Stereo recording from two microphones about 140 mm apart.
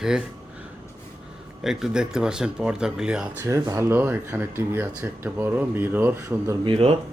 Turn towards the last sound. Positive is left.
turn(degrees=-40)  # may be behind; listen again after turning